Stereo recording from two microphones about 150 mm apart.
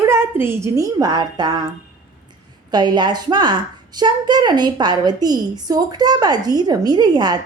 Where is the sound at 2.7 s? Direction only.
30° right (ahead or behind).